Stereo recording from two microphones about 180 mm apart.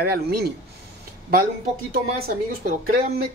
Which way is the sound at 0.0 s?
60° right (ahead or behind).